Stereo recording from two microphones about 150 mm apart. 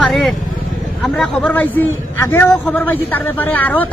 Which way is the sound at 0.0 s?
Centre (ahead or behind).